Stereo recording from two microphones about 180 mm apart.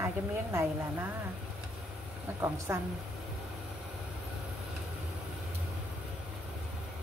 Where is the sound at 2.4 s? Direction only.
15° right (ahead or behind).